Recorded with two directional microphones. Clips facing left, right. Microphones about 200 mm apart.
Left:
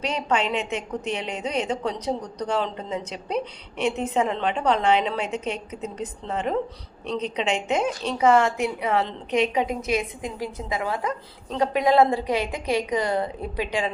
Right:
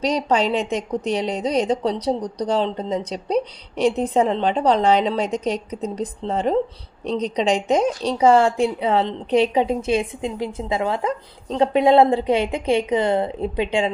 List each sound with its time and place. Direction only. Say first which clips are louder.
0.0 s a woman's voice: right 5 dB; 35° right (ahead or behind)